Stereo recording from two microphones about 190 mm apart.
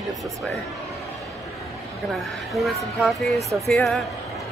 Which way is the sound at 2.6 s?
Centre (ahead or behind).